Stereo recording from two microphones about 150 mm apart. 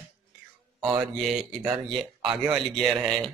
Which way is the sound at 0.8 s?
5° right (ahead or behind).